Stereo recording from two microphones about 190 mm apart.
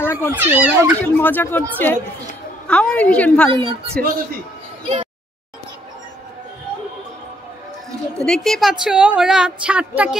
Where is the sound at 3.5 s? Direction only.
25° right (ahead or behind).